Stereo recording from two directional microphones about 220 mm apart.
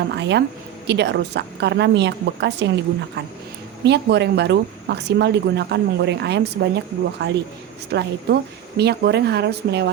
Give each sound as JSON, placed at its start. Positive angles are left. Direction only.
{"t": 0.1, "sound": "speech", "side_deg": -50}
{"t": 3.8, "sound": "speech", "side_deg": -50}